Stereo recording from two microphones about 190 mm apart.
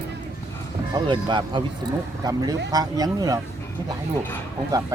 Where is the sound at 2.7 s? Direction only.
20° right (ahead or behind).